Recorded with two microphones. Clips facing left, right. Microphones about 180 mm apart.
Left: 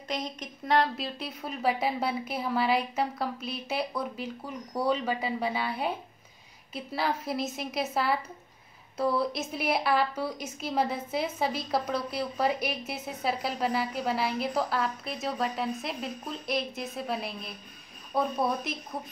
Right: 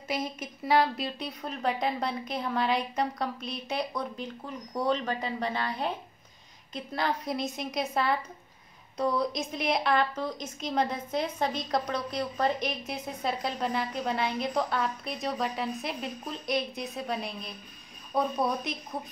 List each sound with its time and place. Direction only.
0.1 s a woman's voice: 5° right (ahead or behind)